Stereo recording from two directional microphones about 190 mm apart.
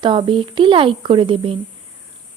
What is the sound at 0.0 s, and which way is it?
Speech, 25° right (ahead or behind).